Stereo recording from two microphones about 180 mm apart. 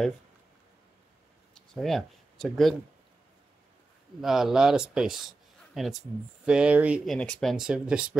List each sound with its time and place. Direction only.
1.5 s a sound: centre (ahead or behind)
4.2 s speech: centre (ahead or behind)
7.2 s speech: 5° left (ahead or behind)